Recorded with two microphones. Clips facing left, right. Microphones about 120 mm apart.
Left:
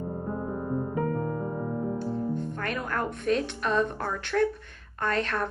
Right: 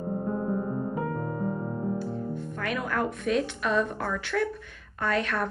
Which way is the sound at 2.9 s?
5° right (ahead or behind).